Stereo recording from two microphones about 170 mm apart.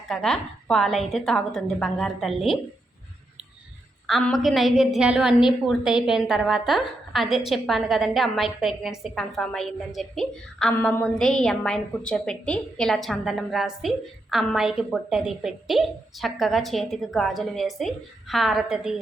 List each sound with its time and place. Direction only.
0.1 s a woman's voice: 5° left (ahead or behind)
4.0 s a woman's voice: centre (ahead or behind)